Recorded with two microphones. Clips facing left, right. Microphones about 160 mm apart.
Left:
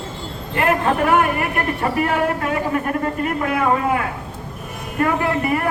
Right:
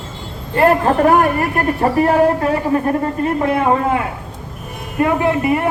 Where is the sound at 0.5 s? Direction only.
35° right (ahead or behind).